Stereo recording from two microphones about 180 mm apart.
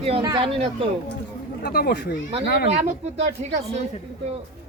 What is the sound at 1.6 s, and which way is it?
Speech, 55° left (ahead or behind).